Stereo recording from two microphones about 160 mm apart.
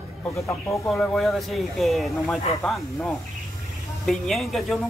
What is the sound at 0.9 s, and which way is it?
Speech, centre (ahead or behind).